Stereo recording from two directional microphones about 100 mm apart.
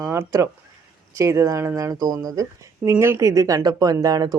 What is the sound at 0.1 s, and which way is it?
Speech, 25° right (ahead or behind).